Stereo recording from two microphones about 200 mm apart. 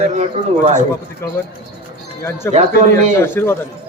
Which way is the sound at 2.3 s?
10° left (ahead or behind).